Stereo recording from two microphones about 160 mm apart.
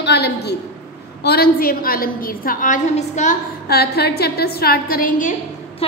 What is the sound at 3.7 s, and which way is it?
A woman's voice, 85° left.